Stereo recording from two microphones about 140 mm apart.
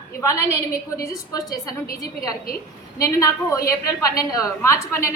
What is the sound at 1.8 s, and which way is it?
Speech, 90° left.